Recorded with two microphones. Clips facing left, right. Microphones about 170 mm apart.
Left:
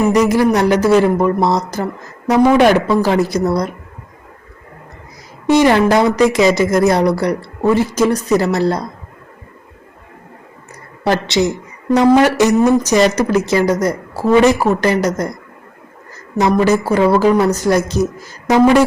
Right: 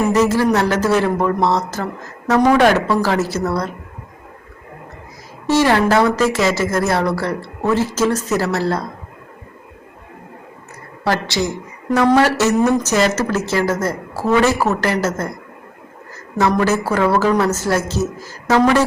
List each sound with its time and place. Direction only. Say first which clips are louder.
0.1 s speech: left 2 dB; 15° left (ahead or behind)
5.5 s speech: left 3 dB; 15° left (ahead or behind)
11.0 s a woman's voice: left 4 dB; 20° left (ahead or behind)
16.4 s speech: left 3 dB; 15° left (ahead or behind)